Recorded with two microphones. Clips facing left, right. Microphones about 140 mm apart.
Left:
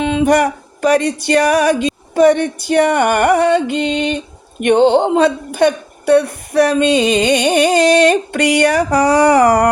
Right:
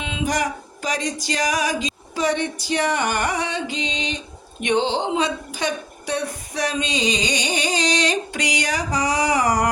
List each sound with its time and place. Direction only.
0.0 s music: 55° left (ahead or behind)
2.1 s a woman's voice: 55° left (ahead or behind)